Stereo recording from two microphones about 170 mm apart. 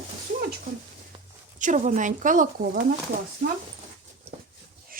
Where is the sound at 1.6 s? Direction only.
50° right (ahead or behind).